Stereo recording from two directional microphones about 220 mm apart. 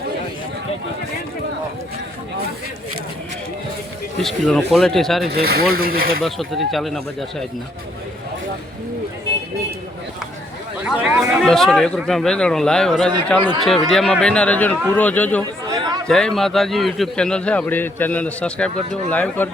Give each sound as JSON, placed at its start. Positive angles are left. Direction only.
{"t": 4.2, "sound": "a man's voice", "side_deg": 0}
{"t": 5.3, "sound": "speech", "side_deg": -45}
{"t": 6.2, "sound": "a man's voice", "side_deg": 0}
{"t": 10.8, "sound": "a man's voice", "side_deg": -5}
{"t": 15.6, "sound": "chatter", "side_deg": -15}
{"t": 16.0, "sound": "a man's voice", "side_deg": 5}